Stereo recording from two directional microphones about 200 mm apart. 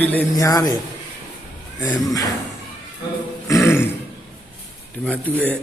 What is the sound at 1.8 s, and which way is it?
Speech, 20° left (ahead or behind).